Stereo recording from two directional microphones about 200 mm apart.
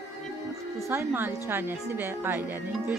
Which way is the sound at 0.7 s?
10° right (ahead or behind).